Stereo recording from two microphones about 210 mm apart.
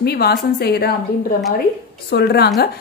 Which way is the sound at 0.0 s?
50° left (ahead or behind).